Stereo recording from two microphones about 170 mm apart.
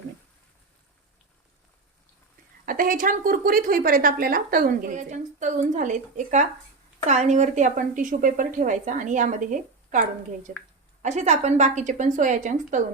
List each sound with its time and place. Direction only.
2.6 s a woman's voice: 55° right (ahead or behind)